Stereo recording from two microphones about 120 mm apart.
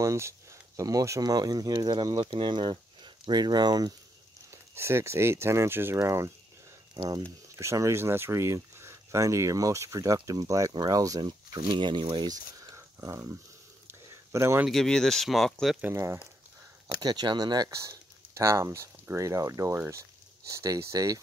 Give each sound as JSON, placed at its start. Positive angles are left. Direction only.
{"t": 0.0, "sound": "speech", "side_deg": -25}
{"t": 4.5, "sound": "speech", "side_deg": -20}
{"t": 14.7, "sound": "speech", "side_deg": 5}
{"t": 15.8, "sound": "speech", "side_deg": -25}
{"t": 17.0, "sound": "speech", "side_deg": -35}